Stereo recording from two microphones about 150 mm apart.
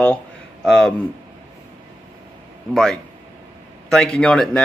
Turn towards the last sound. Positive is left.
turn(degrees=5)  # may be behind; listen again after turning